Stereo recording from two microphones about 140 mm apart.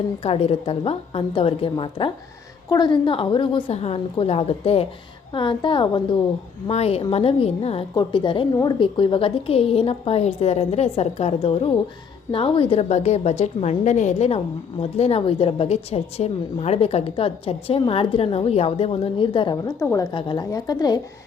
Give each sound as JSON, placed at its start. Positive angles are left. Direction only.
{"t": 0.2, "sound": "a woman's voice", "side_deg": 45}
{"t": 6.7, "sound": "a woman's voice", "side_deg": 45}
{"t": 7.9, "sound": "a woman's voice", "side_deg": 35}
{"t": 19.8, "sound": "a woman's voice", "side_deg": 25}
{"t": 20.1, "sound": "a woman's voice", "side_deg": 35}